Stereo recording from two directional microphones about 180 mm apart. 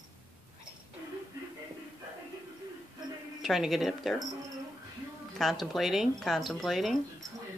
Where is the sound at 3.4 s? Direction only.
Centre (ahead or behind).